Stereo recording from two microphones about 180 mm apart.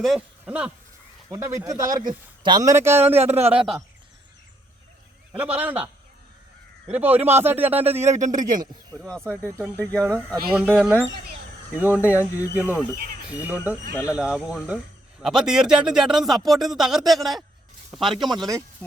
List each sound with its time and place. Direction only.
0.0 s speech: 5° right (ahead or behind)
3.2 s speech: 35° right (ahead or behind)
3.5 s speech: 5° right (ahead or behind)
5.4 s speech: 10° right (ahead or behind)
6.9 s speech: 10° right (ahead or behind)
8.0 s speech: 40° right (ahead or behind)
9.7 s speech: 5° left (ahead or behind)
10.5 s speech: 5° right (ahead or behind)
12.6 s speech: 15° left (ahead or behind)
13.3 s speech: 10° right (ahead or behind)
13.9 s speech: 15° left (ahead or behind)
14.2 s speech: 5° right (ahead or behind)
18.2 s speech: 25° right (ahead or behind)
18.8 s a sound: 10° left (ahead or behind)